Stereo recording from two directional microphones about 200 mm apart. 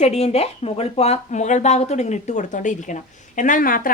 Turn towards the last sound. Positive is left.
turn(degrees=45)  # may be behind; listen again after turning